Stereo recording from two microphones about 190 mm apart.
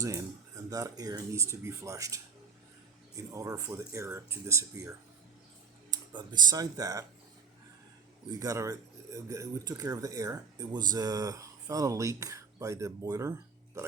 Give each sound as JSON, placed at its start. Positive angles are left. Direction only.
{"t": 0.0, "sound": "speech", "side_deg": -20}
{"t": 8.3, "sound": "speech", "side_deg": -20}